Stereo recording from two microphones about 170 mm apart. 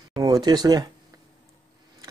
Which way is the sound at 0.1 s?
25° right (ahead or behind).